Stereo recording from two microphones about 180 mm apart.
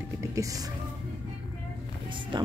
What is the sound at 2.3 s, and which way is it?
Speech, 25° right (ahead or behind).